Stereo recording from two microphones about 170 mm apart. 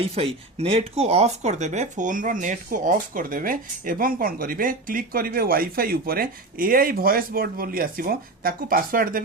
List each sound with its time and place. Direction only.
0.0 s speech: 35° right (ahead or behind); by 9.2 s 55° right (ahead or behind)